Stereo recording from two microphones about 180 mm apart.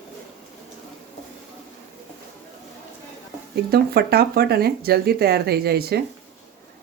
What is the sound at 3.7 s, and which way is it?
A woman's voice, 60° right (ahead or behind).